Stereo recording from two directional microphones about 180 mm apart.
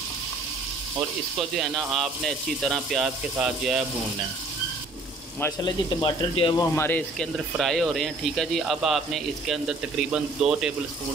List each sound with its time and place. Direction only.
1.6 s speech: centre (ahead or behind)
5.6 s speech: 25° left (ahead or behind)
6.7 s speech: 10° left (ahead or behind); by 10.7 s 5° right (ahead or behind)